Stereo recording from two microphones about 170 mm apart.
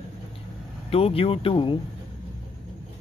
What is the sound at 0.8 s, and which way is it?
Speech, 35° left (ahead or behind).